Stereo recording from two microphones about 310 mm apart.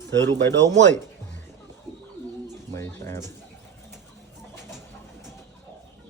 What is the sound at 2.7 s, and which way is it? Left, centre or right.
Speech, centre.